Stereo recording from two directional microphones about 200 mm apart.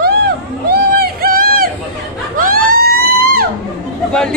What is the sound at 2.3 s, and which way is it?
Vehicle, 45° right (ahead or behind).